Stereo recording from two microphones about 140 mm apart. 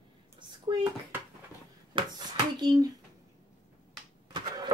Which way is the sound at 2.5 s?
30° right (ahead or behind).